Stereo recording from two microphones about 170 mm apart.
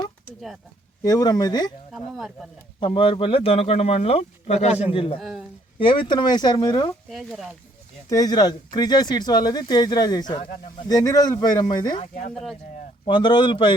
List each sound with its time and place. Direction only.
1.0 s speech: 25° left (ahead or behind)
1.9 s speech: centre (ahead or behind)
2.8 s speech: 30° left (ahead or behind)
5.2 s speech: 5° right (ahead or behind)
5.8 s speech: 30° left (ahead or behind)
7.1 s speech: centre (ahead or behind)
8.1 s speech: 25° left (ahead or behind)
12.3 s speech: centre (ahead or behind)
13.1 s speech: 30° left (ahead or behind)